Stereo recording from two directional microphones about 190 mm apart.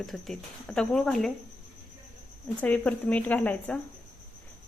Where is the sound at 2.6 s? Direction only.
5° left (ahead or behind).